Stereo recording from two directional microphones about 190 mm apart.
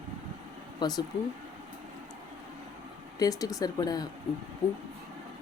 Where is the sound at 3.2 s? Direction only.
20° left (ahead or behind).